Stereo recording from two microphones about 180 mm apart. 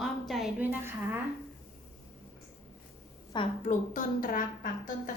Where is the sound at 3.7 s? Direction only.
50° left (ahead or behind).